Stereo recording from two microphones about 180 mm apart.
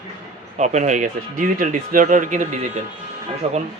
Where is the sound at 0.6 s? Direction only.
40° right (ahead or behind).